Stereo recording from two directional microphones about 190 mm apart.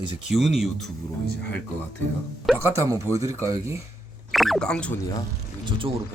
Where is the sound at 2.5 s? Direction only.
Centre (ahead or behind).